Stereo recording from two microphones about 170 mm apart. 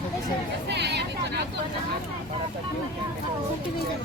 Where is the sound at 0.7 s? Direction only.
80° right.